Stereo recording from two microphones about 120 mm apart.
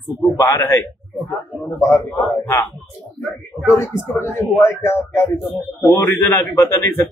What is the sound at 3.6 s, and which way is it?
Speech, 20° left (ahead or behind).